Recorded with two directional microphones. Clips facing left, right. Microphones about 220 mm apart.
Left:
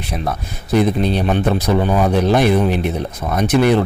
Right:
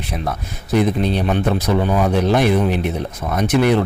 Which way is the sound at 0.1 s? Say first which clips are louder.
Left 2 dB; 35° left (ahead or behind).